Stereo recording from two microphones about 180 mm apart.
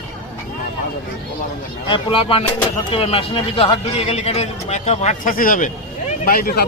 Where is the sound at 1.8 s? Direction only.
30° left (ahead or behind); by 6.6 s 55° left (ahead or behind).